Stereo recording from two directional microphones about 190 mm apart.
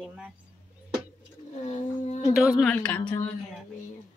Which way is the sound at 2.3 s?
5° left (ahead or behind).